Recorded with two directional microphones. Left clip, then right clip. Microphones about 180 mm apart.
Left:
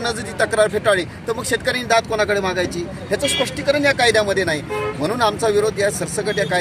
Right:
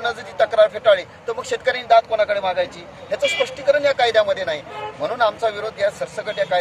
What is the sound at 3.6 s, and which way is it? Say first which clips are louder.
Speech: even; 25° right (ahead or behind).